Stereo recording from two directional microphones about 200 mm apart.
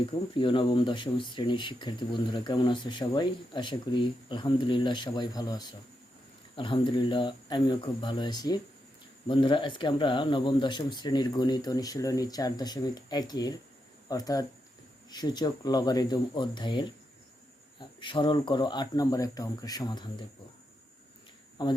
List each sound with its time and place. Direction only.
0.3 s speech: 25° left (ahead or behind)
21.6 s speech: 25° left (ahead or behind)